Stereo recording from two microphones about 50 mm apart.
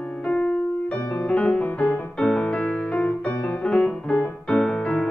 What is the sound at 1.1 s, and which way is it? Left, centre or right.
Music, left.